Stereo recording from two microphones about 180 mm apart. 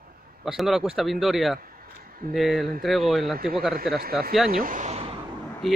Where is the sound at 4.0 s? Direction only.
55° right (ahead or behind).